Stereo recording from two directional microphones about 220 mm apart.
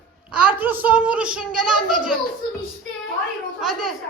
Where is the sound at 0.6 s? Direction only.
10° right (ahead or behind).